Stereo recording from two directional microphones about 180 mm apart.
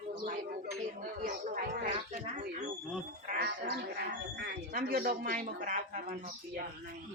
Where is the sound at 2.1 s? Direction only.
45° right (ahead or behind).